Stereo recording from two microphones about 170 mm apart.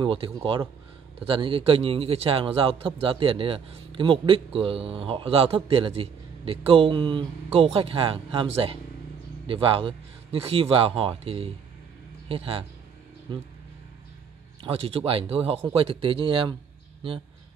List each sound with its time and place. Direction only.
0.0 s a man's voice: 30° right (ahead or behind)
14.6 s a man's voice: 35° right (ahead or behind)